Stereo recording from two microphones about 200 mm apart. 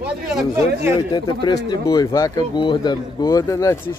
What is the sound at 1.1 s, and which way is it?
Speech, 20° left (ahead or behind).